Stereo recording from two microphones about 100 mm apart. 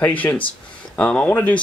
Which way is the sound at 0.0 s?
15° left (ahead or behind).